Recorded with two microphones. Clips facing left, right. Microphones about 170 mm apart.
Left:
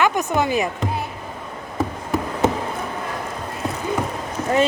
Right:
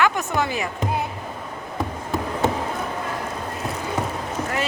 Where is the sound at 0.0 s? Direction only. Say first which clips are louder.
Left 2 dB; 20° left (ahead or behind).